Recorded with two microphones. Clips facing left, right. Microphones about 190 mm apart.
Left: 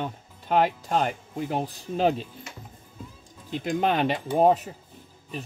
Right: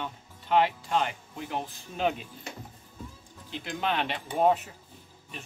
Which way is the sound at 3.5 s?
45° left (ahead or behind).